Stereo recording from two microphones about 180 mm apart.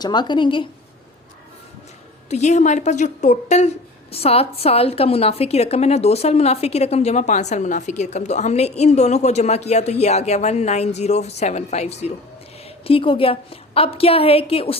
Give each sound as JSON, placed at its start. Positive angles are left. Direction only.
{"t": 0.0, "sound": "a woman's voice", "side_deg": 25}
{"t": 2.3, "sound": "a woman's voice", "side_deg": 40}